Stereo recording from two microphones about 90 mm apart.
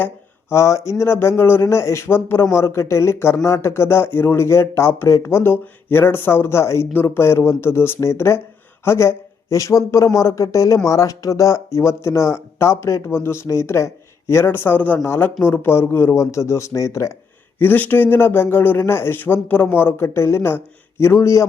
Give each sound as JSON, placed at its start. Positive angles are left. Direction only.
{"t": 0.5, "sound": "speech", "side_deg": 30}
{"t": 17.6, "sound": "speech", "side_deg": 20}